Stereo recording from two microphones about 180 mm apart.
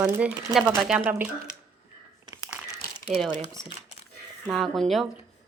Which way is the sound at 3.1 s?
Centre (ahead or behind).